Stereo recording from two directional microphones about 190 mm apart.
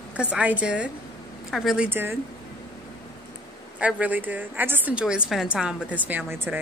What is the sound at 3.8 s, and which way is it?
A woman's voice, 10° right (ahead or behind).